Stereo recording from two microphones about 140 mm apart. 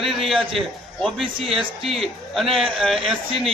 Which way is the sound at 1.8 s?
Centre (ahead or behind).